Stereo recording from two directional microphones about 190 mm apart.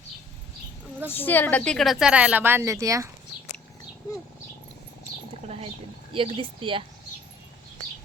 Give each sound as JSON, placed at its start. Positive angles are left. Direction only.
{"t": 1.1, "sound": "a woman's voice", "side_deg": 10}
{"t": 5.5, "sound": "speech", "side_deg": -30}